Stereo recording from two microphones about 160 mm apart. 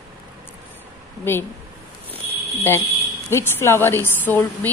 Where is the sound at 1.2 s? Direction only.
15° left (ahead or behind).